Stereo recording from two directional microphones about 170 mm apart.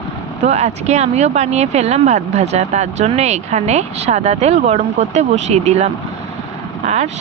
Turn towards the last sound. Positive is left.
turn(degrees=-40)  # may be behind; listen again after turning